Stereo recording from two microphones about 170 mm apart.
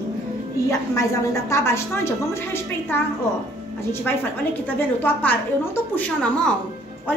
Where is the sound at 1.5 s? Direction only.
15° left (ahead or behind).